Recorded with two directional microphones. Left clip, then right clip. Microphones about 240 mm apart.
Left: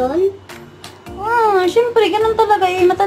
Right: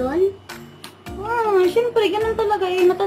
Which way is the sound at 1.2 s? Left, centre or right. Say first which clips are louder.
Left 4 dB; centre.